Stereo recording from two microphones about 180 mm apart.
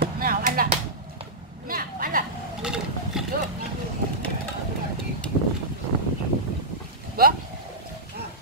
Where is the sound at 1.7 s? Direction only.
50° right (ahead or behind).